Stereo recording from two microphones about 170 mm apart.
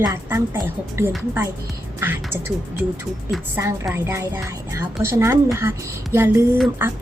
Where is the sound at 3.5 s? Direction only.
15° right (ahead or behind).